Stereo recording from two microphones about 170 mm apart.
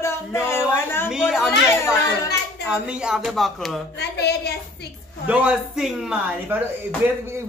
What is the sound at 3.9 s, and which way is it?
Speech, 75° left (ahead or behind).